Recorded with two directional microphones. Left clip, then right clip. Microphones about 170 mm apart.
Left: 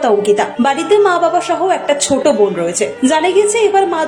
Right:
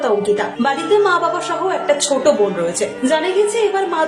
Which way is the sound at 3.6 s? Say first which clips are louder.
Left 4 dB; 20° left (ahead or behind).